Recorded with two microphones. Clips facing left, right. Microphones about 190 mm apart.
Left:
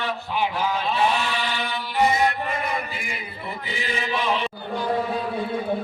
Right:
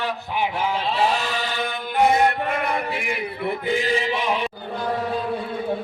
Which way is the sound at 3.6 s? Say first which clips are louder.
Right 7 dB; 45° right (ahead or behind).